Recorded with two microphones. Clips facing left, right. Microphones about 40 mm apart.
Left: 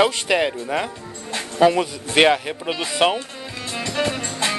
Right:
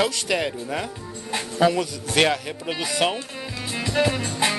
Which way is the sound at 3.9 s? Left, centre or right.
Centre.